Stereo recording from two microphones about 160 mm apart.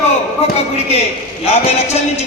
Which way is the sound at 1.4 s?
45° left (ahead or behind).